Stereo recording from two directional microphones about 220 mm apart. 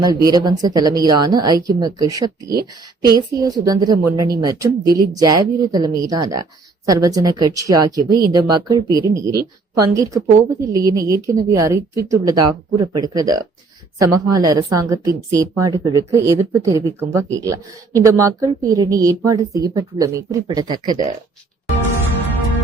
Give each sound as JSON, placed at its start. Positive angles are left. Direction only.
{"t": 0.0, "sound": "a woman's voice", "side_deg": -15}
{"t": 18.0, "sound": "a woman's voice", "side_deg": -15}